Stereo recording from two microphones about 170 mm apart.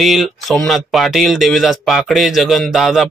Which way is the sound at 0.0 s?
Centre (ahead or behind).